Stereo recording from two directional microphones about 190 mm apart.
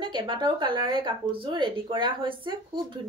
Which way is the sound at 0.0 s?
25° right (ahead or behind).